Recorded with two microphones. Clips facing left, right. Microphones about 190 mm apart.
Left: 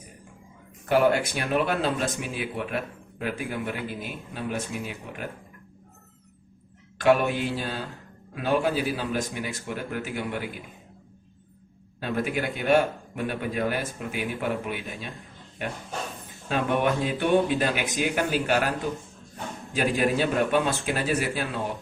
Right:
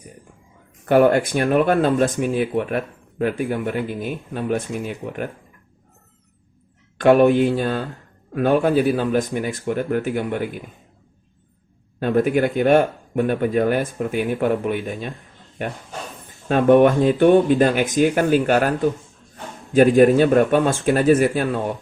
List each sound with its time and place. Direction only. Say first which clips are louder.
0.9 s speech: right 7 dB; 50° right (ahead or behind)
7.0 s speech: right 8 dB; 50° right (ahead or behind)
11.9 s speech: right 10 dB; 50° right (ahead or behind)
16.5 s speech: right 11 dB; 50° right (ahead or behind)
19.7 s speech: right 12 dB; 50° right (ahead or behind)